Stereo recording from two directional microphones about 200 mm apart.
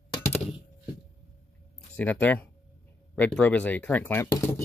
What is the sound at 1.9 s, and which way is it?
Speech, 10° left (ahead or behind).